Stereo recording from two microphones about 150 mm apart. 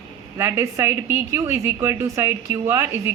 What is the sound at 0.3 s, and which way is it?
A woman's voice, 15° right (ahead or behind).